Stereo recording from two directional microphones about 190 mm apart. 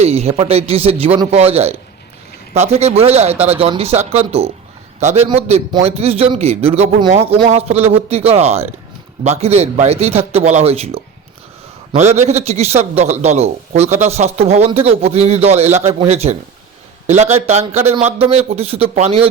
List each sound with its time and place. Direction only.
0.0 s a man's voice: 35° right (ahead or behind)